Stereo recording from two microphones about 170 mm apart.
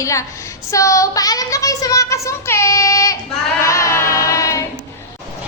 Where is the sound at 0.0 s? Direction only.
20° left (ahead or behind).